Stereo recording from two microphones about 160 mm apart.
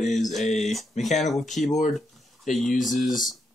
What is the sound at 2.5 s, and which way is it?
Speech, 50° left (ahead or behind).